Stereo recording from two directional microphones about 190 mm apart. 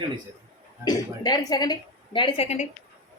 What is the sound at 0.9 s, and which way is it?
A woman's voice, 20° left (ahead or behind).